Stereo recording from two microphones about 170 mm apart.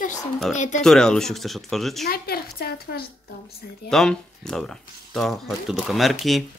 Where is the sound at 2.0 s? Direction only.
65° left (ahead or behind).